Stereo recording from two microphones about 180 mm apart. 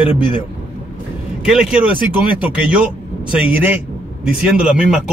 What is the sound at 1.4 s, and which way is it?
A man's voice, 5° right (ahead or behind).